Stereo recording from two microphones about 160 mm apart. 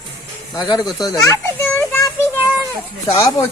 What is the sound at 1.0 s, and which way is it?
Children playing, 20° left (ahead or behind).